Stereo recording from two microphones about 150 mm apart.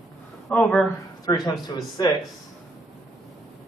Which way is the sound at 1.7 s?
30° left (ahead or behind).